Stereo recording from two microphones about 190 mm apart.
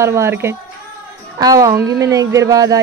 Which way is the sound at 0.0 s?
15° right (ahead or behind).